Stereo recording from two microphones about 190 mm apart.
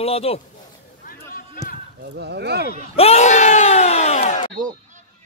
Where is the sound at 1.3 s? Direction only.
50° left (ahead or behind).